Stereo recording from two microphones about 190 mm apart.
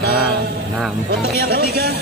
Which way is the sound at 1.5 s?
60° right (ahead or behind).